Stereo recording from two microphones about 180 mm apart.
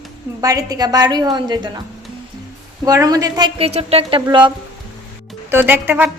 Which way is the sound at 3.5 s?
35° right (ahead or behind).